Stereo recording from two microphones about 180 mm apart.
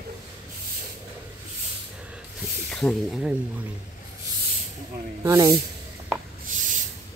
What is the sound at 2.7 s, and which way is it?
Speech, centre (ahead or behind).